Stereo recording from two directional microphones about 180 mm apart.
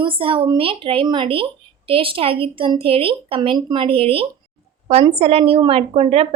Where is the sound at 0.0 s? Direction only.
30° right (ahead or behind).